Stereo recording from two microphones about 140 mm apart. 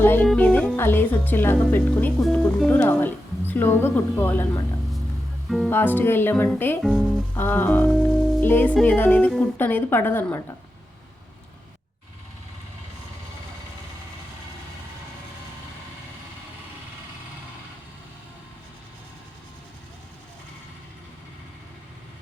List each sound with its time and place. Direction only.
0.0 s music: 15° left (ahead or behind)
0.3 s speech: 10° left (ahead or behind)
5.6 s speech: 15° left (ahead or behind)
6.8 s speech: centre (ahead or behind)
7.3 s speech: 15° left (ahead or behind)